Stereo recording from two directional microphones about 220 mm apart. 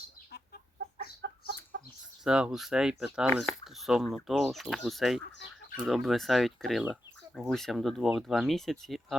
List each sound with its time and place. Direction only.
0.3 s chicken: 45° left (ahead or behind)
1.2 s chicken: 50° right (ahead or behind)
2.2 s speech: 5° right (ahead or behind)